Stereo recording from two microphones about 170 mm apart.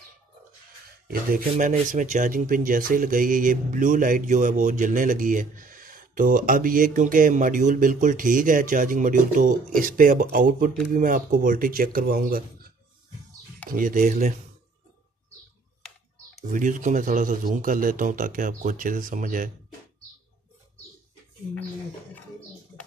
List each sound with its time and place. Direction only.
1.0 s speech: 60° right (ahead or behind)
13.7 s speech: 55° right (ahead or behind)
16.5 s speech: 50° right (ahead or behind)